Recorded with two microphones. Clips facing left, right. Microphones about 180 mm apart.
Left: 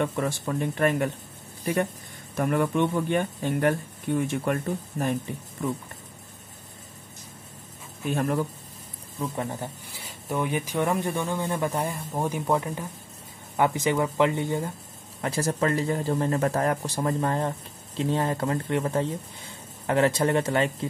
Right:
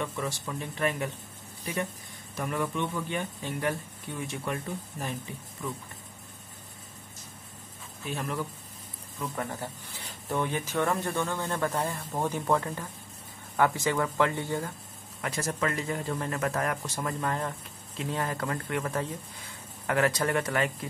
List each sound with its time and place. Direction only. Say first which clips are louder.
0.0 s speech: left 6 dB; 55° left (ahead or behind)
2.3 s speech: left 7 dB; 55° left (ahead or behind)
8.1 s speech: left 7 dB; 45° left (ahead or behind)
9.2 s speech: left 4 dB; 20° left (ahead or behind)
15.2 s speech: left 5 dB; 35° left (ahead or behind)